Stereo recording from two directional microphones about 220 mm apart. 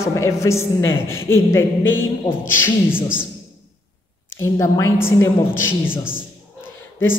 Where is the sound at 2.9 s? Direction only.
5° right (ahead or behind).